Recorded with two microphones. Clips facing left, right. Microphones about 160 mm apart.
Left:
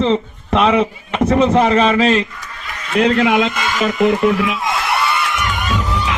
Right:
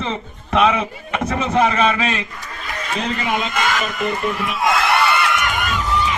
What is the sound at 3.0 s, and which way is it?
Speech, 90° left.